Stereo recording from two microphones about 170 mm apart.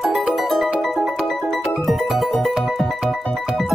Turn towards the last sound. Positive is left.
turn(degrees=0)  # may be behind; listen again after turning